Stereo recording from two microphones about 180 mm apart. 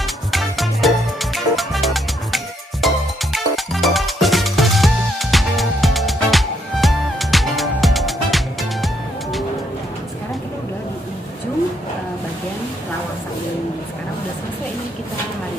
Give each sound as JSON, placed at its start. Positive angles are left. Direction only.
{"t": 0.0, "sound": "music", "side_deg": 0}